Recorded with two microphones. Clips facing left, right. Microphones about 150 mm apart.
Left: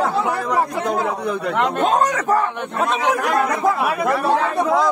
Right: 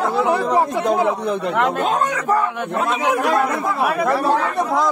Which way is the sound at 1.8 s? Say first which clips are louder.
Left 2 dB; 45° left (ahead or behind).